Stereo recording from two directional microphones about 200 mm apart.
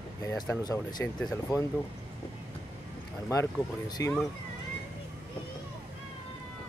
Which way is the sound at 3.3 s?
20° left (ahead or behind).